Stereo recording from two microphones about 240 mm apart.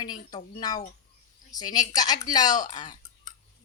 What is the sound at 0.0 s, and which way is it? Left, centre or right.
Speech, centre.